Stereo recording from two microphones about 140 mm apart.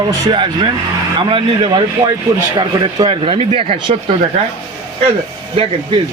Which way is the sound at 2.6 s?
35° right (ahead or behind).